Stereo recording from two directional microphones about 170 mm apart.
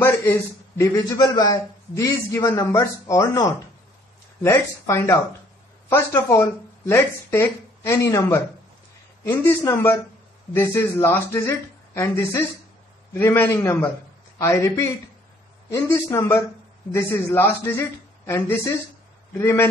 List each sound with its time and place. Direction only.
0.0 s a man's voice: 15° left (ahead or behind)